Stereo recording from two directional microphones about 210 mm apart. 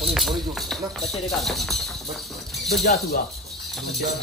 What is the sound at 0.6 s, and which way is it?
Music, centre (ahead or behind).